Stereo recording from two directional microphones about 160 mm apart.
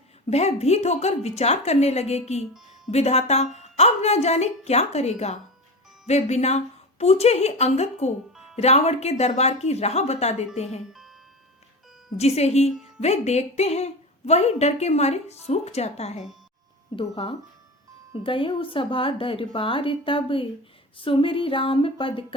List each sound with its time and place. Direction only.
0.3 s a woman's voice: 40° left (ahead or behind)
12.1 s a woman's voice: 40° left (ahead or behind)